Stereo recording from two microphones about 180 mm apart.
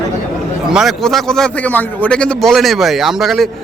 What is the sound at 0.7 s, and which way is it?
A man's voice, centre (ahead or behind).